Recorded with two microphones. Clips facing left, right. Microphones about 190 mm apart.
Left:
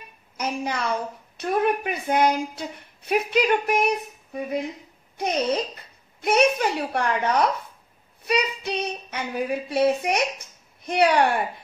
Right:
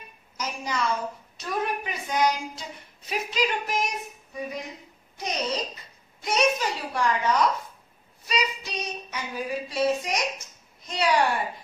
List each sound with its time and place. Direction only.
0.4 s a woman's voice: 60° left (ahead or behind)